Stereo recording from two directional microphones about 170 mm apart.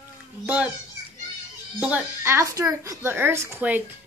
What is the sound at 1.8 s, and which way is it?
Speech, 10° right (ahead or behind).